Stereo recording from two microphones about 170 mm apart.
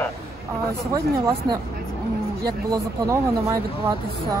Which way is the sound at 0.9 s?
20° right (ahead or behind).